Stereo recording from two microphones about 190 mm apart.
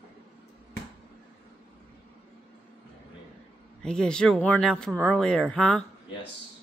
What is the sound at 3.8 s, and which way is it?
Speech, 5° left (ahead or behind).